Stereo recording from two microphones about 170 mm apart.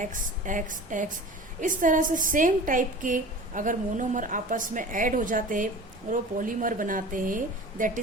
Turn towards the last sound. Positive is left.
turn(degrees=-50)  # may be behind; listen again after turning